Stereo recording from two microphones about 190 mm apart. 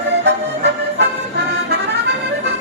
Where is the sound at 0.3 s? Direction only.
65° right (ahead or behind).